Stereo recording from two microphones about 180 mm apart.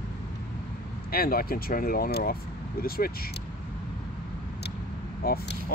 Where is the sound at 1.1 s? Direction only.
55° left (ahead or behind).